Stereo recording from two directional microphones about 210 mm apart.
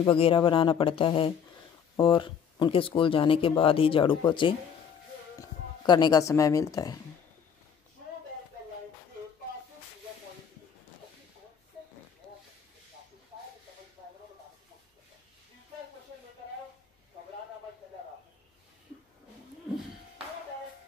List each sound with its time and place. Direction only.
0.0 s speech: 25° left (ahead or behind)